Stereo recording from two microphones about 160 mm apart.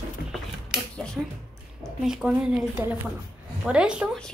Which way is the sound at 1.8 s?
5° right (ahead or behind).